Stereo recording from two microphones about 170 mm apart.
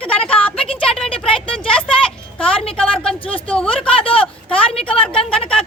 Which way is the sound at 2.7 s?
5° left (ahead or behind).